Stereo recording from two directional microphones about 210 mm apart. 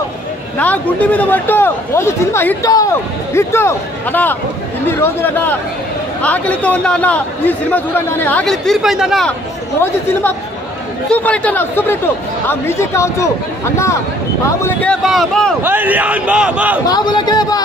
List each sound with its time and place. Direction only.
0.6 s a man's voice: 5° left (ahead or behind)
11.1 s a man's voice: 5° left (ahead or behind)
14.4 s speech: 10° left (ahead or behind)
15.6 s a man's voice: 10° right (ahead or behind)
16.8 s speech: 20° left (ahead or behind)